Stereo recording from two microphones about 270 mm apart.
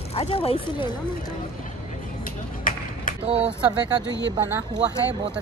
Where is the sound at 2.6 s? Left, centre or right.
Left.